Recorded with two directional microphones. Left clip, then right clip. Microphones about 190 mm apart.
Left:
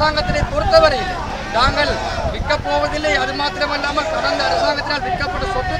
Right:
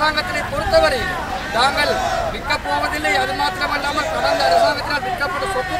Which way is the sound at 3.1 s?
Centre (ahead or behind).